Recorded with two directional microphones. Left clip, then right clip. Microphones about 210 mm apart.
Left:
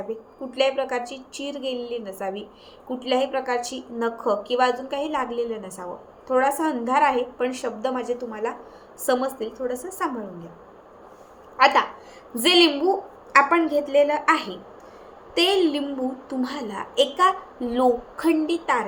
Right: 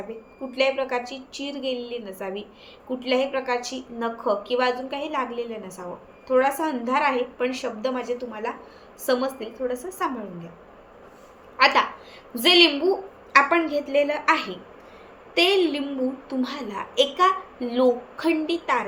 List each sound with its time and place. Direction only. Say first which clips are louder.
0.5 s a woman's voice: left 1 dB; 10° left (ahead or behind)
11.5 s a woman's voice: left 1 dB; 10° left (ahead or behind)